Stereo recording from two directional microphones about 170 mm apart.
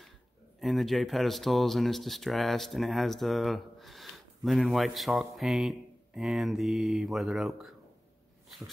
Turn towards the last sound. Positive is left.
turn(degrees=0)  # may be behind; listen again after turning